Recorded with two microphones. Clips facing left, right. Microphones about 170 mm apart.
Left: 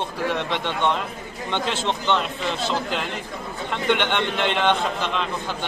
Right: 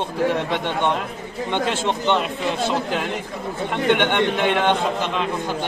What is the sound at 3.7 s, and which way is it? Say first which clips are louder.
Speech: right 3 dB; 50° right (ahead or behind).